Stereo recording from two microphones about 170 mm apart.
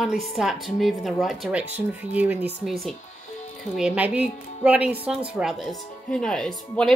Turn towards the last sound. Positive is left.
turn(degrees=5)  # may be behind; listen again after turning